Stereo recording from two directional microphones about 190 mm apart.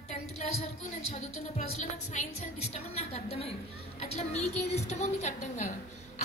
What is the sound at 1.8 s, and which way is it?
A woman's voice, 35° left (ahead or behind).